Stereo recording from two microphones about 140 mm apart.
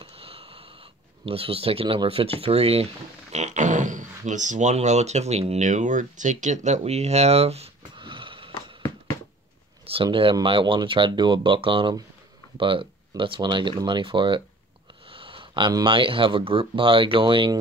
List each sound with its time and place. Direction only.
0.0 s a sound: 40° right (ahead or behind)
1.2 s speech: 40° right (ahead or behind)
8.0 s sniff: 35° right (ahead or behind)
10.0 s speech: 40° right (ahead or behind)